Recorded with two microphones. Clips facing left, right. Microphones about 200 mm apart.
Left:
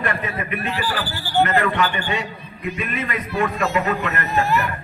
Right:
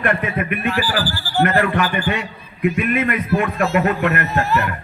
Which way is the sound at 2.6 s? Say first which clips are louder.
Right 8 dB; 60° right (ahead or behind).